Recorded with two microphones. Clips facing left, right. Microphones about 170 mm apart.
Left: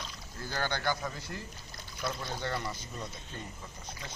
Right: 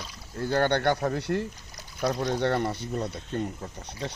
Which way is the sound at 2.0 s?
40° right (ahead or behind).